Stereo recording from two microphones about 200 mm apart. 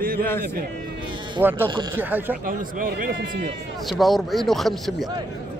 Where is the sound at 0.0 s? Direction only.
45° right (ahead or behind).